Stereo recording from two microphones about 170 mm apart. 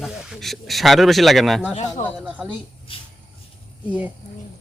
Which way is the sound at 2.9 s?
30° left (ahead or behind).